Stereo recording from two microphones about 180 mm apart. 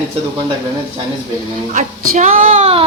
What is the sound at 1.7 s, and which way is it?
Speech, 45° right (ahead or behind).